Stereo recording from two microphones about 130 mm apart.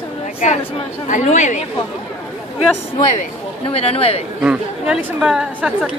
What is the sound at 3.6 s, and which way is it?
Speech, 50° left (ahead or behind).